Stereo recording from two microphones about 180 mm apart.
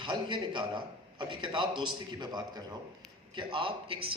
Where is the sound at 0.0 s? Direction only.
25° right (ahead or behind).